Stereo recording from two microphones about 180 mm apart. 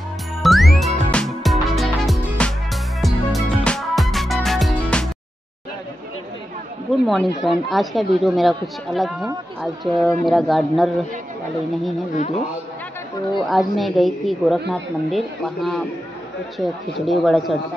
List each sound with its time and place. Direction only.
0.4 s music: centre (ahead or behind)
7.1 s a woman's voice: centre (ahead or behind)
12.1 s a man's voice: 40° left (ahead or behind)
13.5 s a woman's voice: centre (ahead or behind)